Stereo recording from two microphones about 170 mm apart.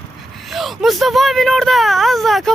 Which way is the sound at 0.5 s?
Centre (ahead or behind).